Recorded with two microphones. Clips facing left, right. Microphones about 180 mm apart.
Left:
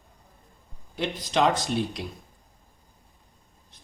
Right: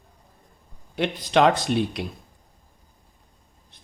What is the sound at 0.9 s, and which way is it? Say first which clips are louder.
Speech: right 6 dB; 65° right (ahead or behind).